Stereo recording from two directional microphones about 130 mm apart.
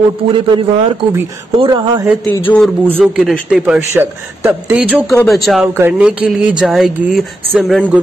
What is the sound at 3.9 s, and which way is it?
Speech, 20° right (ahead or behind).